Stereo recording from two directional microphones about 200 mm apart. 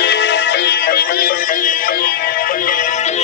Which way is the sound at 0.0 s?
55° left (ahead or behind).